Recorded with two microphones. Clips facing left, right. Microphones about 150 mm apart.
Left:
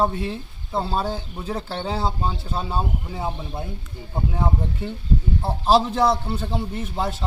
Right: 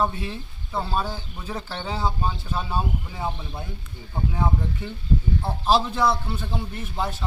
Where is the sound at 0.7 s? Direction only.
25° left (ahead or behind).